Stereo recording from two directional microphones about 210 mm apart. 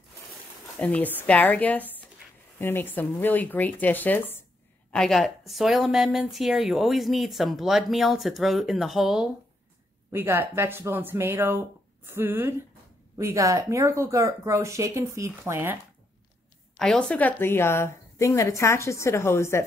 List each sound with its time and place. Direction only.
0.7 s a woman's voice: 5° left (ahead or behind); by 15.8 s 10° right (ahead or behind)
16.7 s a woman's voice: centre (ahead or behind)